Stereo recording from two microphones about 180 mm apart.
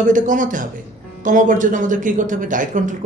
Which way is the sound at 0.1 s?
45° right (ahead or behind).